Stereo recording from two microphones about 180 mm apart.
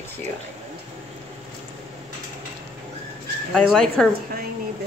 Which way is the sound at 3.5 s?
Centre (ahead or behind).